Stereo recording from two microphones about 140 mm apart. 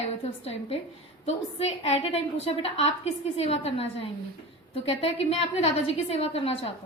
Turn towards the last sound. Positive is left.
turn(degrees=45)  # may be behind; listen again after turning